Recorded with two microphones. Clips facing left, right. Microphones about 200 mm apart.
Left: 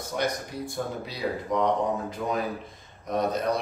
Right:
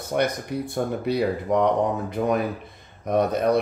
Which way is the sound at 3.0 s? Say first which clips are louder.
Right 5 dB; 60° right (ahead or behind).